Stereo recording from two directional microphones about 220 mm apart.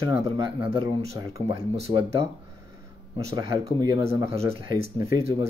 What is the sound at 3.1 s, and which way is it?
Speech, 15° right (ahead or behind).